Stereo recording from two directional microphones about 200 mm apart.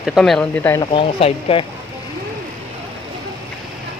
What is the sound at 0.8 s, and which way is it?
Speech, 30° left (ahead or behind).